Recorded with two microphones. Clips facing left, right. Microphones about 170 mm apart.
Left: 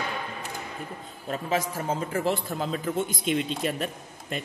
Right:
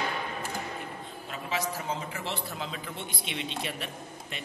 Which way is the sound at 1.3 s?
45° left (ahead or behind).